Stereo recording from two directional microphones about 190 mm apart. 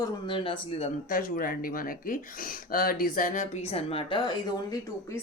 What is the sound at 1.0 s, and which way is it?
A woman's voice, 45° left (ahead or behind).